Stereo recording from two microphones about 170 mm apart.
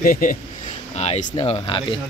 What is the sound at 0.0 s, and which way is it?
Speech, 50° left (ahead or behind).